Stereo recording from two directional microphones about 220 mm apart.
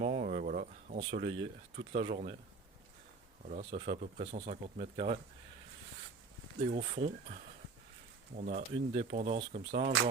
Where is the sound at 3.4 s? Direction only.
30° right (ahead or behind).